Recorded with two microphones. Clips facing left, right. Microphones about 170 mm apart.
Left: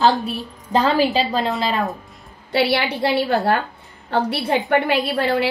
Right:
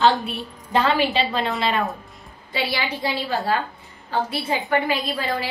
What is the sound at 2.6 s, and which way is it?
Speech, 70° left (ahead or behind).